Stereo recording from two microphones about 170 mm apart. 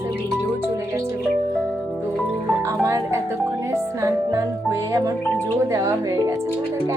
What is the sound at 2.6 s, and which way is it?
Speech, 20° right (ahead or behind).